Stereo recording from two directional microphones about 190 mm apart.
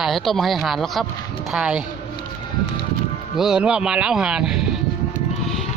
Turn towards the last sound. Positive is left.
turn(degrees=-5)  # may be behind; listen again after turning